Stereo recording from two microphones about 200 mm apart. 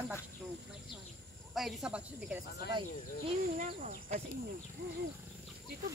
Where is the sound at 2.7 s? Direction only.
20° right (ahead or behind).